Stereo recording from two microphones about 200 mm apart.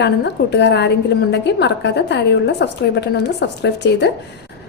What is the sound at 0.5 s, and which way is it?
A woman's voice, 60° left (ahead or behind).